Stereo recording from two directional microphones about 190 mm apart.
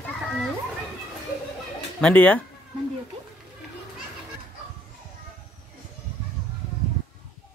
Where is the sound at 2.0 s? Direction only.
5° left (ahead or behind).